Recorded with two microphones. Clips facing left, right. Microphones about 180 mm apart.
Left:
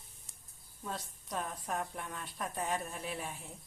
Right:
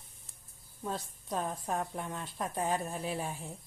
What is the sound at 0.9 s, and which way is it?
A woman's voice, 30° right (ahead or behind).